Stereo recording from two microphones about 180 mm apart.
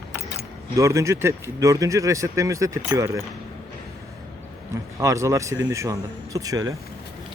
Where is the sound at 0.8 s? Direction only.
15° right (ahead or behind).